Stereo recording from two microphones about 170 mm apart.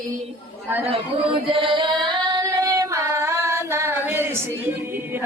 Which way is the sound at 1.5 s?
30° right (ahead or behind).